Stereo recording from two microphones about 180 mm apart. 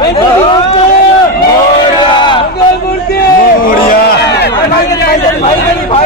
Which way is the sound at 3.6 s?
55° left (ahead or behind).